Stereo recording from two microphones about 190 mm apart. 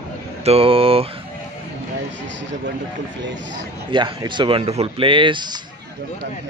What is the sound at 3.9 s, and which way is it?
Speech, 25° right (ahead or behind).